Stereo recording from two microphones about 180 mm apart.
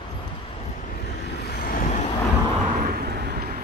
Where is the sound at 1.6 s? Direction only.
50° left (ahead or behind).